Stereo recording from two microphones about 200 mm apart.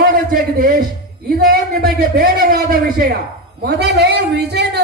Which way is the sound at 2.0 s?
45° right (ahead or behind).